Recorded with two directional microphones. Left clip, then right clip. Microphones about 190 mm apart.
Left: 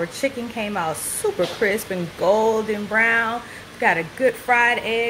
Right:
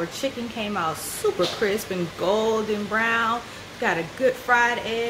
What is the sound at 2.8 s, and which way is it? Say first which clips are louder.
Speech: left 4 dB; 15° left (ahead or behind).